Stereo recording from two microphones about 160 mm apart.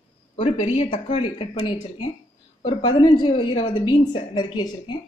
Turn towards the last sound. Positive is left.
turn(degrees=30)  # may be behind; listen again after turning